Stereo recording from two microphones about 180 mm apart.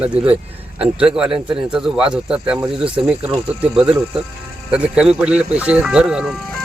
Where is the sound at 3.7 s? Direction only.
5° right (ahead or behind).